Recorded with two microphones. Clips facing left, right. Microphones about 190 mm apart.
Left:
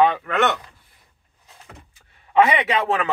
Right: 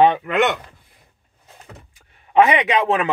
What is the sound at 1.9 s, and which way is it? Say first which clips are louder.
A man's voice: right 2 dB; 15° right (ahead or behind).